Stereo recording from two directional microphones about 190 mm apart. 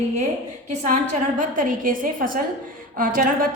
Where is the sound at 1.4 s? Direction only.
45° right (ahead or behind).